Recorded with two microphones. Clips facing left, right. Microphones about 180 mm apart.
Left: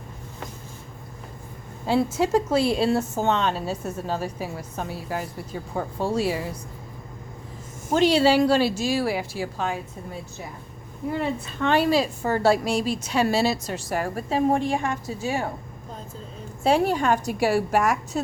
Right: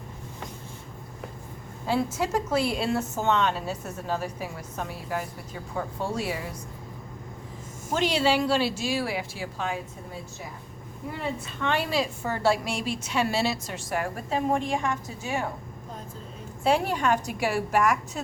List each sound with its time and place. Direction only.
1.9 s a woman's voice: 30° left (ahead or behind)
7.9 s a woman's voice: 35° left (ahead or behind)
11.6 s a woman's voice: 40° left (ahead or behind)
16.6 s a woman's voice: 35° left (ahead or behind)